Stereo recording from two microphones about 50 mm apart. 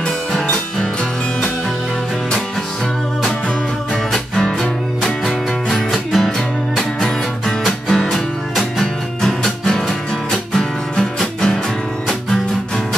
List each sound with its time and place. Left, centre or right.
3.9 s music: centre